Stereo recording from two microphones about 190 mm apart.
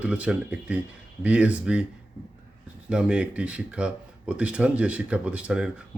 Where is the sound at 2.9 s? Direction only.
5° right (ahead or behind).